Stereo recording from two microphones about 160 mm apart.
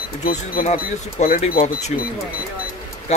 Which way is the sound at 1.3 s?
45° left (ahead or behind).